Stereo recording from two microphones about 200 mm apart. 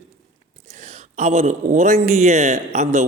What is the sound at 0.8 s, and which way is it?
A man's voice, 35° right (ahead or behind).